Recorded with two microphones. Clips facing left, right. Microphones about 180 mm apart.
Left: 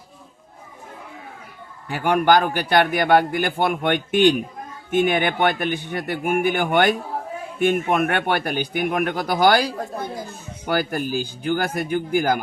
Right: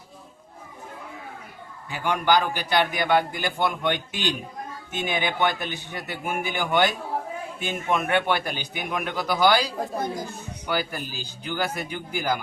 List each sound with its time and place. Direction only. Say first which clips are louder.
1.9 s a man's voice: left 5 dB; 55° left (ahead or behind)